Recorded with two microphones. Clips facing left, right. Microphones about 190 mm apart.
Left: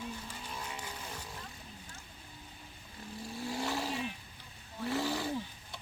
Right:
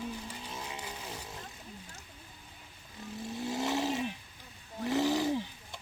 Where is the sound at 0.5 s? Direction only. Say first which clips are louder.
Even; 15° right (ahead or behind).